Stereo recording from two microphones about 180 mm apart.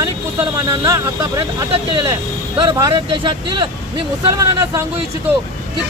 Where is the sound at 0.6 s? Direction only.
20° right (ahead or behind).